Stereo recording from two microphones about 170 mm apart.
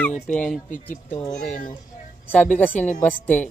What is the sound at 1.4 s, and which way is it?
Speech, 45° left (ahead or behind).